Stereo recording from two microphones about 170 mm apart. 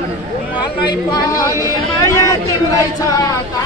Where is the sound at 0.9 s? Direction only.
25° left (ahead or behind).